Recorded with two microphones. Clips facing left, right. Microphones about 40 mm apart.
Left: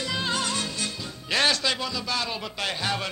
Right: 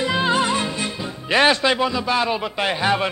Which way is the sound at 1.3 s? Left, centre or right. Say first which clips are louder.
Right 8 dB; right.